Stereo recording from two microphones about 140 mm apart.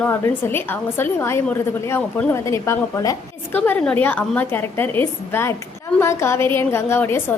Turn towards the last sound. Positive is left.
turn(degrees=15)  # may be behind; listen again after turning